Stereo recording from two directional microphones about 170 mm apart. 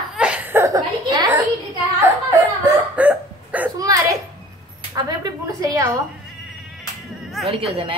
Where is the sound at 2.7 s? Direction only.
10° right (ahead or behind).